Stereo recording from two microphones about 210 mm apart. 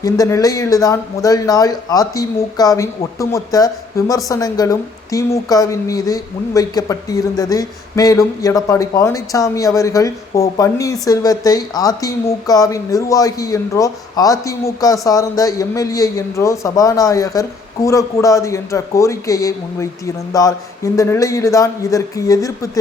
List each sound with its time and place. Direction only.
0.0 s a woman's voice: 15° left (ahead or behind)